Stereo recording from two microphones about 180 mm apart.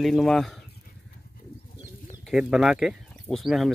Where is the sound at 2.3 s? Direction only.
5° right (ahead or behind).